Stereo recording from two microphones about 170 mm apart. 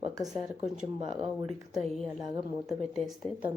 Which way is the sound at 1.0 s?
35° right (ahead or behind).